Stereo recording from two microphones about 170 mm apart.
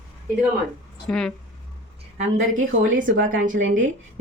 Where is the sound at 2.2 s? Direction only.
50° right (ahead or behind).